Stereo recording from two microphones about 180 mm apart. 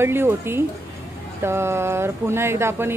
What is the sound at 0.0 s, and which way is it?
Speech, 15° right (ahead or behind).